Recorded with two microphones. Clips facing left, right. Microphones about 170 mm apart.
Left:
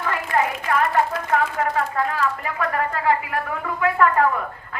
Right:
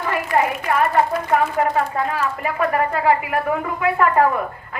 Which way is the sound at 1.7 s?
15° right (ahead or behind).